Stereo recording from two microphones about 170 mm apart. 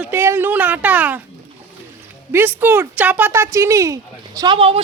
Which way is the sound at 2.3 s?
10° right (ahead or behind).